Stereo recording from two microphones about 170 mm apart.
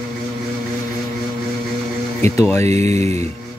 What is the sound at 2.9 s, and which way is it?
Music, 40° right (ahead or behind).